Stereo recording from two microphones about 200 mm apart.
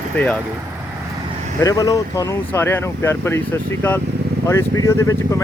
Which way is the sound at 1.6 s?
15° left (ahead or behind).